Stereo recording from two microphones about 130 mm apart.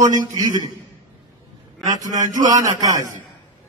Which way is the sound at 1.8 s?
30° right (ahead or behind).